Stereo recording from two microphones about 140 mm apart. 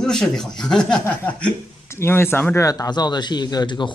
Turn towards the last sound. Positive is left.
turn(degrees=35)  # may be behind; listen again after turning